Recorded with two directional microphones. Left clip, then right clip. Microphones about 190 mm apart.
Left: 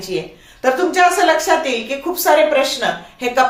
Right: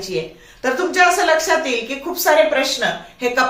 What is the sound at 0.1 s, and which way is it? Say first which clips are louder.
A woman's voice: even; 35° left (ahead or behind).